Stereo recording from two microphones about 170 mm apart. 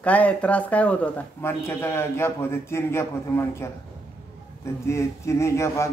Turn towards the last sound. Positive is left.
turn(degrees=15)  # may be behind; listen again after turning